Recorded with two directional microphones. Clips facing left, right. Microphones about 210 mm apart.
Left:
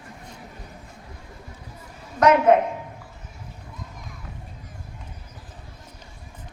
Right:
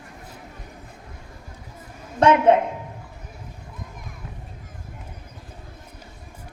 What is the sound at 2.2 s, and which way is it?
Speech, 30° right (ahead or behind).